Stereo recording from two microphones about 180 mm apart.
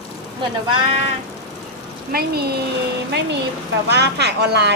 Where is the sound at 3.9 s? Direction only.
65° right (ahead or behind).